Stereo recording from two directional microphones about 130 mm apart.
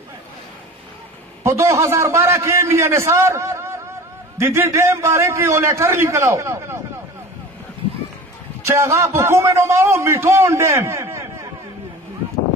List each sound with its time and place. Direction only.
1.4 s a man's voice: 20° right (ahead or behind)
8.6 s a man's voice: 20° right (ahead or behind)